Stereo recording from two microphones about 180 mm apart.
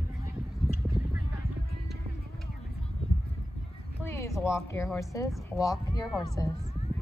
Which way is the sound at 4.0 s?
15° left (ahead or behind).